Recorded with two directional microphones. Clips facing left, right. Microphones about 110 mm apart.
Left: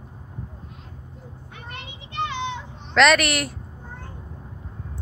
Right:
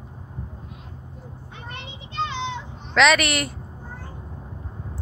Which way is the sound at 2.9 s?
Centre (ahead or behind).